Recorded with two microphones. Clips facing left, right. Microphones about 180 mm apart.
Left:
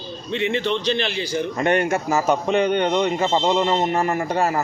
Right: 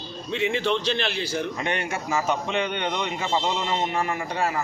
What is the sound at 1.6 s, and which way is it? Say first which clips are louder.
A man's voice: left 9 dB; 50° left (ahead or behind).